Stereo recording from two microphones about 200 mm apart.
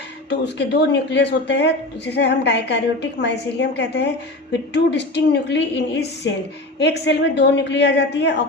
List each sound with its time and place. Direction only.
0.3 s a woman's voice: 60° left (ahead or behind)